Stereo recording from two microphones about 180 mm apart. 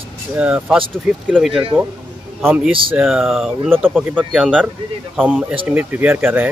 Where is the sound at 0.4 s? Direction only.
5° right (ahead or behind).